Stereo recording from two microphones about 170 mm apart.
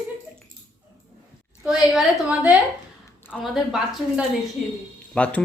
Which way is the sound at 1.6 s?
5° right (ahead or behind).